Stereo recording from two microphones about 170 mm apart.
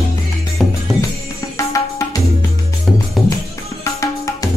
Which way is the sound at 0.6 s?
Centre (ahead or behind).